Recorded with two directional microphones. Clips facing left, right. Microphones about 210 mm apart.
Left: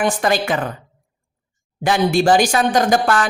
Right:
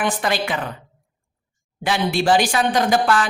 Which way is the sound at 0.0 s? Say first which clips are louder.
Left 4 dB; 45° left (ahead or behind).